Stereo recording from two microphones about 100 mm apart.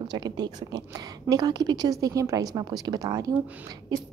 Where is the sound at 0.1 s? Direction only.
45° right (ahead or behind).